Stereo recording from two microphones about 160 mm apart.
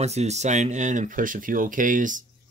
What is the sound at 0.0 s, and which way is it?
Speech, 45° right (ahead or behind).